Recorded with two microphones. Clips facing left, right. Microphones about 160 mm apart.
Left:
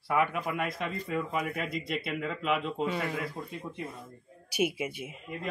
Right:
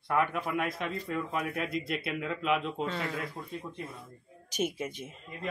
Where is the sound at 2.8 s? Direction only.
10° left (ahead or behind).